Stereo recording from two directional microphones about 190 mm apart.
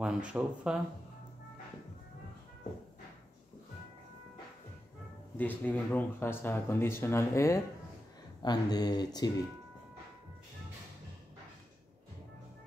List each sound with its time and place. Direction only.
0.0 s speech: 5° right (ahead or behind)
5.4 s speech: 10° left (ahead or behind)